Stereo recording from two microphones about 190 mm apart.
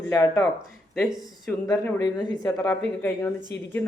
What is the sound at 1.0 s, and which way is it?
Speech, 5° left (ahead or behind).